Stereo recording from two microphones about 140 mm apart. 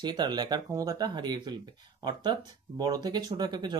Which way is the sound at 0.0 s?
30° right (ahead or behind).